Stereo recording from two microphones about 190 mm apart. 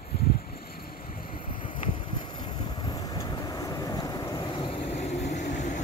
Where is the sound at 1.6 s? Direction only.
25° left (ahead or behind).